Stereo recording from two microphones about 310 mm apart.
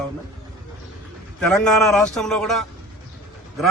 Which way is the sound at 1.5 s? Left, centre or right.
Centre.